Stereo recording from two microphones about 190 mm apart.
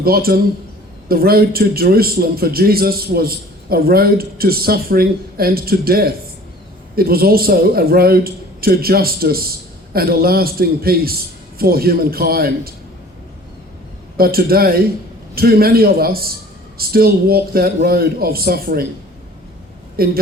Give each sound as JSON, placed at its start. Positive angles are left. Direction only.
{"t": 0.0, "sound": "a man's voice", "side_deg": -50}
{"t": 14.2, "sound": "a man's voice", "side_deg": -50}
{"t": 20.0, "sound": "a man's voice", "side_deg": -50}